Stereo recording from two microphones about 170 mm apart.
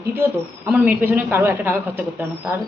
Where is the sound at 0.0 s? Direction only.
15° right (ahead or behind).